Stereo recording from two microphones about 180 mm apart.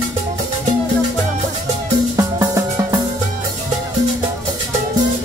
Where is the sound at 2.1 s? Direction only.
20° right (ahead or behind).